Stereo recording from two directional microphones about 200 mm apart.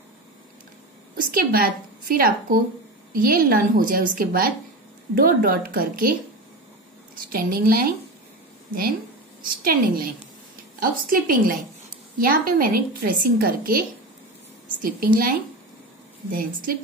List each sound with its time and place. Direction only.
1.1 s a woman's voice: 45° right (ahead or behind)
7.3 s a woman's voice: 45° right (ahead or behind)
9.4 s a woman's voice: 45° right (ahead or behind)